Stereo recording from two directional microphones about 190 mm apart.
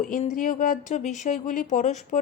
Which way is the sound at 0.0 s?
40° left (ahead or behind).